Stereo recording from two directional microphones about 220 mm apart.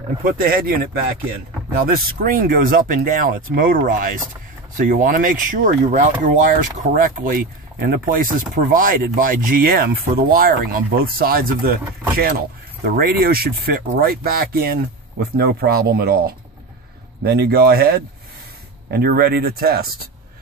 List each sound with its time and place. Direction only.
0.2 s speech: 40° right (ahead or behind)